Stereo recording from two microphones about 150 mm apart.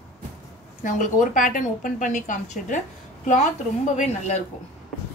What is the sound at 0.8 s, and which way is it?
A woman's voice, 60° left (ahead or behind).